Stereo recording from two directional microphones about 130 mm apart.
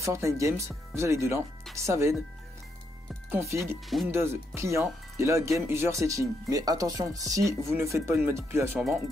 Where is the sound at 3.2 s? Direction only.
20° right (ahead or behind).